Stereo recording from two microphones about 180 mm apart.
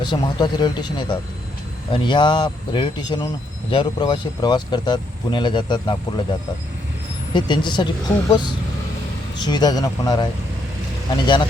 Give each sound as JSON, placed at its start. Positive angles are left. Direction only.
{"t": 0.0, "sound": "speech", "side_deg": 25}
{"t": 7.3, "sound": "speech", "side_deg": 25}
{"t": 8.1, "sound": "speech", "side_deg": 10}
{"t": 9.4, "sound": "speech", "side_deg": 25}